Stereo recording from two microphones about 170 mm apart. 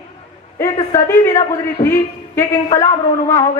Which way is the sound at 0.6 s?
15° left (ahead or behind).